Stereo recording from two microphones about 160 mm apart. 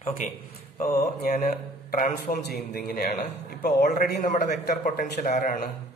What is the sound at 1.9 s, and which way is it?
Speech, 55° left (ahead or behind).